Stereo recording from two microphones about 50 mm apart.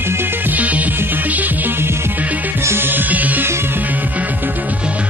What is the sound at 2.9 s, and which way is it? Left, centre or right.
Music, right.